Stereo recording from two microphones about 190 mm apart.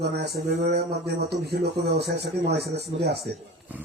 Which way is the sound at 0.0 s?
60° right (ahead or behind).